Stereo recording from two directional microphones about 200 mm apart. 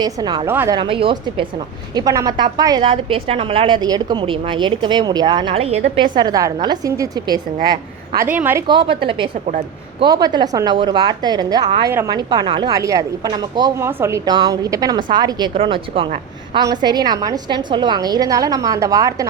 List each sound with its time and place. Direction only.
0.0 s a woman's voice: 20° right (ahead or behind)
0.8 s a woman's voice: 25° right (ahead or behind)
8.3 s speech: 10° right (ahead or behind)
8.6 s a woman's voice: 25° right (ahead or behind)